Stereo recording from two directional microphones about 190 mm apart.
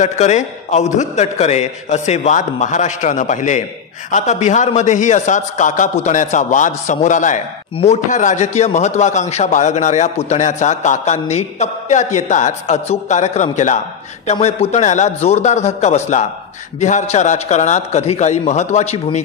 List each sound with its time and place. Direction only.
0.0 s speech: 35° left (ahead or behind)